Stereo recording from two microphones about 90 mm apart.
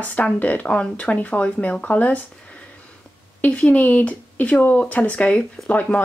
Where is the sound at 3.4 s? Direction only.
15° left (ahead or behind).